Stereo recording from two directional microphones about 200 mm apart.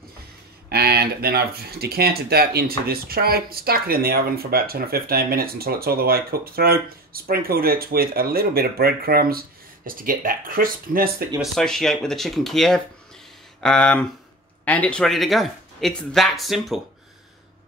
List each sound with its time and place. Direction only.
0.7 s speech: 50° right (ahead or behind)
11.5 s speech: centre (ahead or behind)